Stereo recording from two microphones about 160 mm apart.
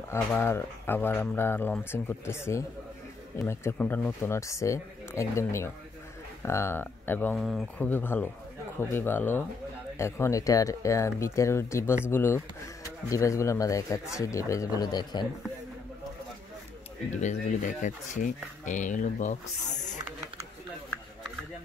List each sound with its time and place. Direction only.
0.1 s speech: 15° left (ahead or behind)
7.3 s speech: centre (ahead or behind)
7.8 s speech: 10° left (ahead or behind)
17.2 s speech: 50° left (ahead or behind)